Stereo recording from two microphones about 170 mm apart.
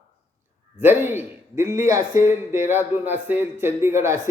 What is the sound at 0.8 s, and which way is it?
A man's voice, 10° right (ahead or behind).